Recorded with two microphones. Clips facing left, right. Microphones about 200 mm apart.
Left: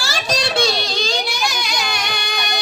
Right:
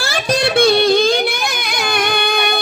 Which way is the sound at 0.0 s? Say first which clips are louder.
Right 5 dB; 55° right (ahead or behind).